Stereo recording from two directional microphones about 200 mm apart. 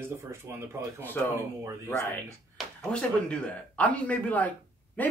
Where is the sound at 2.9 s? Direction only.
5° left (ahead or behind).